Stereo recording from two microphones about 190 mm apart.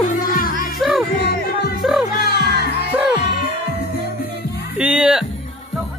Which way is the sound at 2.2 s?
55° left (ahead or behind).